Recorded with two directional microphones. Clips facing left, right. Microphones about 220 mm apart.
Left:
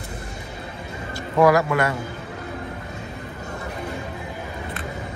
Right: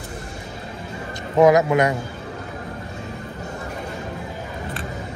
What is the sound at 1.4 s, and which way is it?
Speech, 20° right (ahead or behind).